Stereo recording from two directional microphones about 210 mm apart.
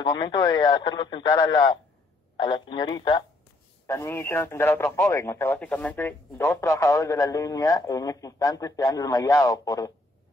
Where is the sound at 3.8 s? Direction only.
10° left (ahead or behind).